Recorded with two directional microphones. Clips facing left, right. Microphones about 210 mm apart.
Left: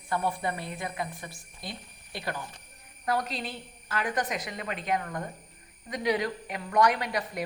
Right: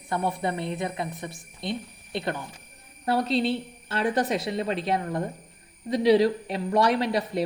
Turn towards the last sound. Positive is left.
turn(degrees=-30)  # may be behind; listen again after turning